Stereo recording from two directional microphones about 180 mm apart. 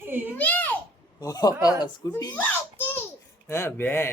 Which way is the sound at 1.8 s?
20° left (ahead or behind).